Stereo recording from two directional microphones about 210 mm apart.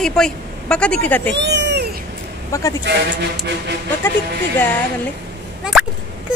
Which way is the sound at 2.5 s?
15° left (ahead or behind).